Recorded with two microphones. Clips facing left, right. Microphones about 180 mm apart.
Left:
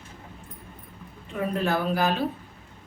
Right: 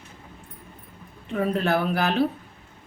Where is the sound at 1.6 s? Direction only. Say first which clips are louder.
Right 1 dB; 70° right (ahead or behind).